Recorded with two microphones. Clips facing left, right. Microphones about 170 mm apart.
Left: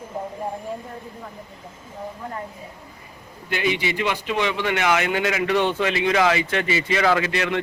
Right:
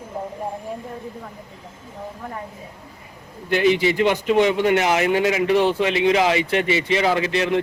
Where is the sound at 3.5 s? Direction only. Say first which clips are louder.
Right 6 dB; 45° right (ahead or behind).